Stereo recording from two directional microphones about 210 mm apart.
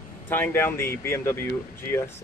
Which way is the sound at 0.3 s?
10° left (ahead or behind).